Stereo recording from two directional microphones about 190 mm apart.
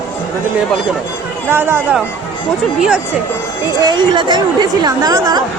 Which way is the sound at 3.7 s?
25° right (ahead or behind).